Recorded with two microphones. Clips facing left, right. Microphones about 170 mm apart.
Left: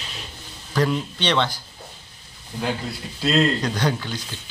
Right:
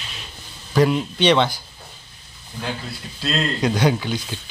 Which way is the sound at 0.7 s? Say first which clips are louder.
Right 5 dB; 10° right (ahead or behind).